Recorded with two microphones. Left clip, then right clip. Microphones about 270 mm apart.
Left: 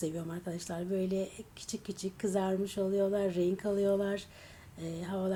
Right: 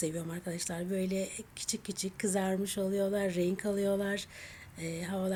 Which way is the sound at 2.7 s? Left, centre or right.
Centre.